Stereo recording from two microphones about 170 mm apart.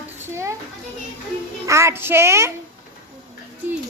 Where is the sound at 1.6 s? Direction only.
15° right (ahead or behind).